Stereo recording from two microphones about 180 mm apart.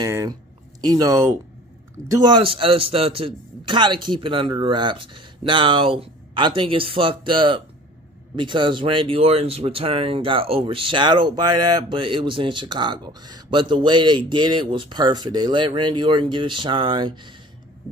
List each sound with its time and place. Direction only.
0.0 s speech: 20° right (ahead or behind)